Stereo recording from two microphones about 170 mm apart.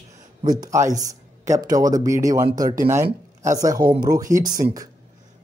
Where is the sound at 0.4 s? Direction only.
25° right (ahead or behind).